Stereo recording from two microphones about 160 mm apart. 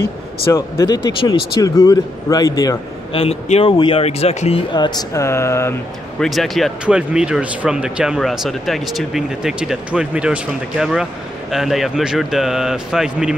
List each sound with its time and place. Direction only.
0.7 s speech: 25° left (ahead or behind)
3.1 s speech: 40° left (ahead or behind)
4.7 s speech: 25° left (ahead or behind)
6.1 s speech: centre (ahead or behind)